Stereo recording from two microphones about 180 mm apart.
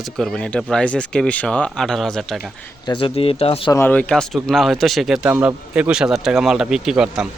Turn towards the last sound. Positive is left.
turn(degrees=-5)  # may be behind; listen again after turning